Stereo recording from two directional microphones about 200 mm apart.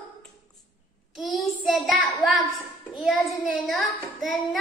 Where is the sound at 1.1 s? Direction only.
Centre (ahead or behind).